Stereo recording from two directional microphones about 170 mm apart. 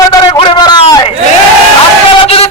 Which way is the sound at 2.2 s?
35° left (ahead or behind).